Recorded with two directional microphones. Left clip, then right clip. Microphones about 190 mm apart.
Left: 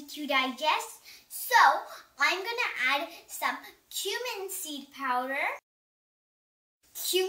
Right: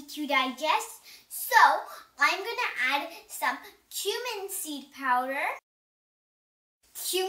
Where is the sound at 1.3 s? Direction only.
20° left (ahead or behind).